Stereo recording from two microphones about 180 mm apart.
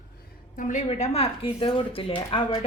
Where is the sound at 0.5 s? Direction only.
45° left (ahead or behind).